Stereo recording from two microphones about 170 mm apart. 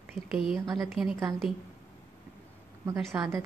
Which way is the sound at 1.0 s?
Centre (ahead or behind).